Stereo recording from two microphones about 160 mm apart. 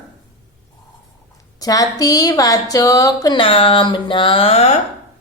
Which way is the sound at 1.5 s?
20° left (ahead or behind).